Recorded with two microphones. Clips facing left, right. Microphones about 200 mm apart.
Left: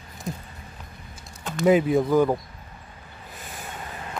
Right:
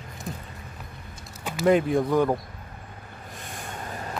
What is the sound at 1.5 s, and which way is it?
Speech, centre (ahead or behind).